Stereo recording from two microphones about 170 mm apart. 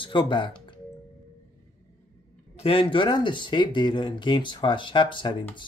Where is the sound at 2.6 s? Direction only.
30° left (ahead or behind).